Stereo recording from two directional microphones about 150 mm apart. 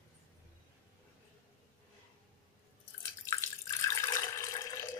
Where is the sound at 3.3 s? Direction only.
20° left (ahead or behind).